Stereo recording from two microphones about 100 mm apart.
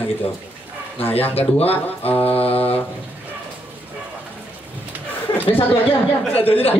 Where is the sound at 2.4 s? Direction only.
85° left.